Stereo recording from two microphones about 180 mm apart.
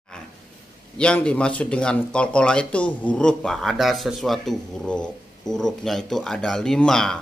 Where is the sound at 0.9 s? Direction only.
5° left (ahead or behind).